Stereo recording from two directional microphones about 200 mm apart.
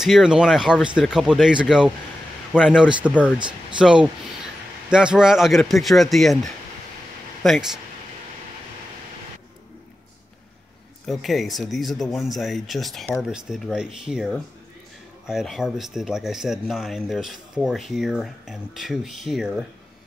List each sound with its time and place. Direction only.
0.0 s speech: 5° right (ahead or behind)
3.3 s speech: 25° right (ahead or behind)
3.8 s speech: 5° right (ahead or behind)
11.1 s speech: centre (ahead or behind)